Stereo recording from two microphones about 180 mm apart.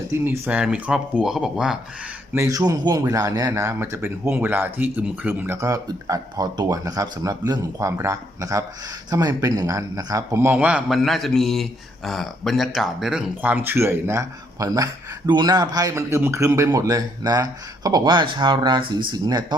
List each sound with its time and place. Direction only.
0.1 s speech: 10° right (ahead or behind)
2.3 s a man's voice: 15° right (ahead or behind)